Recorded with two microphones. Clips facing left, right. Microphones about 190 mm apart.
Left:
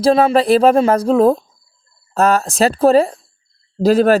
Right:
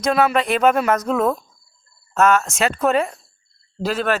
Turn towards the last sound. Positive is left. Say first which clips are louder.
# left 10 dB
turn(degrees=35)  # may be behind; listen again after turning